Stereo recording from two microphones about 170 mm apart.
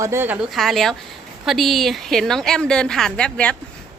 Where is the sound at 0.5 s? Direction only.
Centre (ahead or behind).